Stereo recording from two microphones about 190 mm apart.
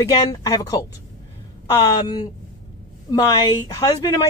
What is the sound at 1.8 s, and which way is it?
Speech, 20° left (ahead or behind).